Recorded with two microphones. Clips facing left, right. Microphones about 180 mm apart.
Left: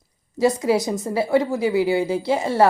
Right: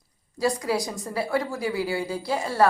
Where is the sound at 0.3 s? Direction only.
20° left (ahead or behind).